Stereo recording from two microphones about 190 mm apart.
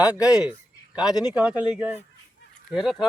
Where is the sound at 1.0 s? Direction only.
20° left (ahead or behind).